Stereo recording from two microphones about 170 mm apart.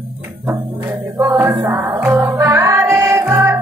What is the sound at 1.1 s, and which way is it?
Music, 15° right (ahead or behind).